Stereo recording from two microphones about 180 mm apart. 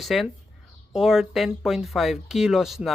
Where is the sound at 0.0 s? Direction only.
Centre (ahead or behind).